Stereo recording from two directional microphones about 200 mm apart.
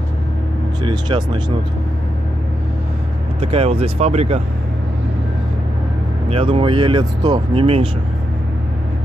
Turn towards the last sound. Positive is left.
turn(degrees=-30)  # may be behind; listen again after turning